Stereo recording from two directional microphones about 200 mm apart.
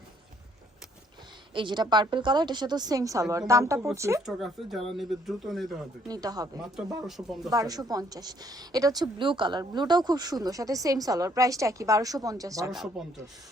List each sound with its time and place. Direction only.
1.5 s a woman's voice: 25° right (ahead or behind)
4.3 s speech: centre (ahead or behind)
6.1 s a woman's voice: 20° right (ahead or behind)
13.0 s speech: centre (ahead or behind)